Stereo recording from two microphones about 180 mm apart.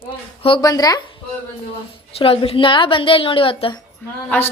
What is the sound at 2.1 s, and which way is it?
A woman's voice, 30° left (ahead or behind).